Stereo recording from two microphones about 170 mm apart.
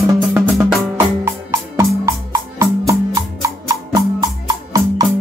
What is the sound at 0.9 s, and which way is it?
Music, 20° right (ahead or behind).